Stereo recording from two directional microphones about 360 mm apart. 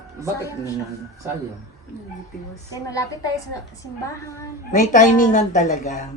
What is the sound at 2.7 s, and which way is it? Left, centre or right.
A woman's voice, centre.